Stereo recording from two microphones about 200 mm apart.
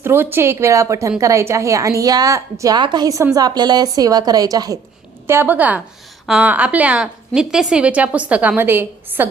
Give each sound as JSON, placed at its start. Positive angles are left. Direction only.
{"t": 0.0, "sound": "a woman's voice", "side_deg": -10}